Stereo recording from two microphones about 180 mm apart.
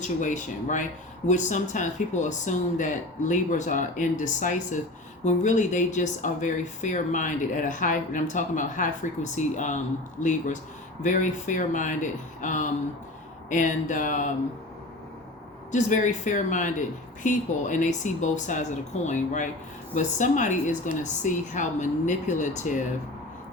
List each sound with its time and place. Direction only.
0.0 s speech: 45° left (ahead or behind)
15.7 s speech: 45° left (ahead or behind)